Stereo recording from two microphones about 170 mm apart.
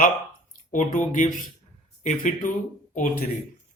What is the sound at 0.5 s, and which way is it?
Speech, 50° left (ahead or behind).